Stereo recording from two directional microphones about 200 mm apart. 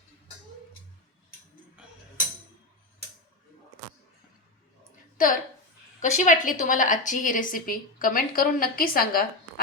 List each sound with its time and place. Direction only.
5.1 s a woman's voice: 45° left (ahead or behind)